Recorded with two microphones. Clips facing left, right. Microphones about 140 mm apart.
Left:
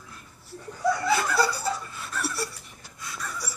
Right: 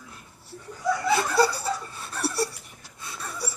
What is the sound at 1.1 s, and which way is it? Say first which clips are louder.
Snicker: right 6 dB; 30° right (ahead or behind).